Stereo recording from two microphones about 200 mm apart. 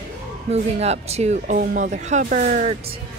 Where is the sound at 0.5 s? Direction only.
30° right (ahead or behind).